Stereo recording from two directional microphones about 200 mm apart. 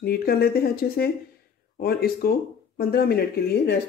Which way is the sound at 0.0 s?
50° left (ahead or behind).